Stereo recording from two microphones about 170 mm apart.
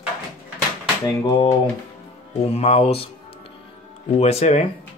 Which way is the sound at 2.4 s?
40° left (ahead or behind).